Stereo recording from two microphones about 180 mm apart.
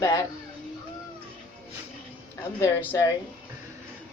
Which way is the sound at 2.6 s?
15° left (ahead or behind).